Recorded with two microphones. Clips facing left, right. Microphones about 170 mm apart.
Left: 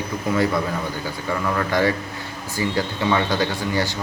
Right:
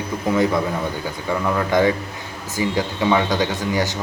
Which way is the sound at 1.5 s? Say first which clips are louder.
Right 3 dB; 15° right (ahead or behind).